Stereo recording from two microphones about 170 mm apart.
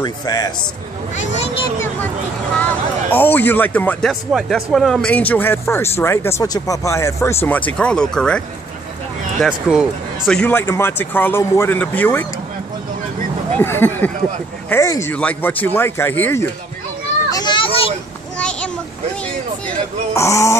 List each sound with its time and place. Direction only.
0.0 s a man's voice: 20° left (ahead or behind)
1.3 s a child's voice: 40° left (ahead or behind)
3.1 s speech: 10° left (ahead or behind)
4.1 s speech: centre (ahead or behind)
9.4 s speech: centre (ahead or behind)
13.6 s speech: 10° left (ahead or behind)
17.3 s children playing: 25° left (ahead or behind)
18.4 s a sound: 5° left (ahead or behind)
20.2 s speech: 20° left (ahead or behind)